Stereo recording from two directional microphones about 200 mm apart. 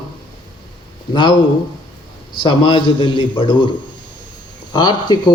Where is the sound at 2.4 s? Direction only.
25° left (ahead or behind).